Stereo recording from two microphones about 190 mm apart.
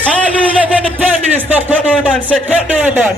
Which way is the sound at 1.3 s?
10° right (ahead or behind).